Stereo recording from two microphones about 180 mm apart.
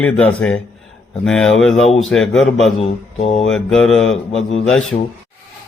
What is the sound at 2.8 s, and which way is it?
Speech, 35° left (ahead or behind).